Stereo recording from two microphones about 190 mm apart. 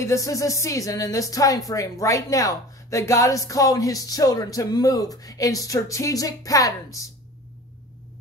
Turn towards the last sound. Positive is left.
turn(degrees=15)  # may be behind; listen again after turning